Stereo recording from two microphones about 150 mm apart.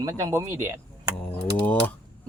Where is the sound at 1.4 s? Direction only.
10° left (ahead or behind).